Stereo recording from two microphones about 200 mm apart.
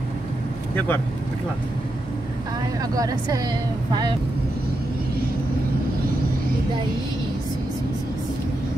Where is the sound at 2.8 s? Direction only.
20° right (ahead or behind).